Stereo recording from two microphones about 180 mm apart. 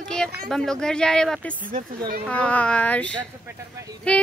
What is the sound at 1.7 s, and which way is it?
Speech, 55° right (ahead or behind).